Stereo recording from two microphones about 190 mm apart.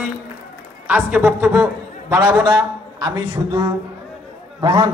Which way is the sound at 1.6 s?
15° right (ahead or behind).